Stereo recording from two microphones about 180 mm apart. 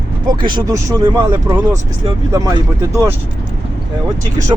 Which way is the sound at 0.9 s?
25° right (ahead or behind).